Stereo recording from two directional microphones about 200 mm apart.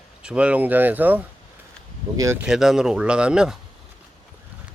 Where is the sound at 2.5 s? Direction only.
Centre (ahead or behind).